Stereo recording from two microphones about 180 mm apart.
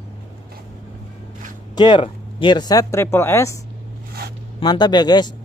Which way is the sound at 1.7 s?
25° left (ahead or behind).